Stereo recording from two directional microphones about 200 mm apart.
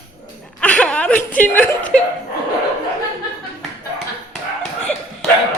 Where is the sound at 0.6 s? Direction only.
5° left (ahead or behind).